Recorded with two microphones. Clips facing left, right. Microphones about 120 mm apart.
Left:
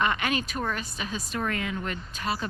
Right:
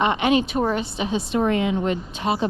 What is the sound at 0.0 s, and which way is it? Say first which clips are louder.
A woman's voice: right 8 dB; 20° right (ahead or behind).